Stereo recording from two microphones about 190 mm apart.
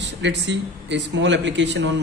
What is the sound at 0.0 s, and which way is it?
A man's voice, 65° right (ahead or behind).